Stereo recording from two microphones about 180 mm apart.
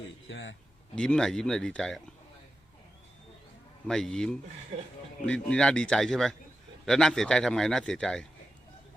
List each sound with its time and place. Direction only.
0.3 s a man's voice: 90° left
0.9 s a man's voice: 5° left (ahead or behind)
3.8 s a man's voice: 5° left (ahead or behind)